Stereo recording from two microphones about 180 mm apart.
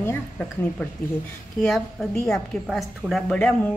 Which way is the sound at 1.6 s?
Centre (ahead or behind).